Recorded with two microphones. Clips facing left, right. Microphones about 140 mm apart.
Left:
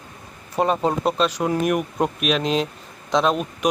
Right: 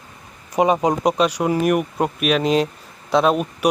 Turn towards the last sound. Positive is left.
turn(degrees=-5)  # may be behind; listen again after turning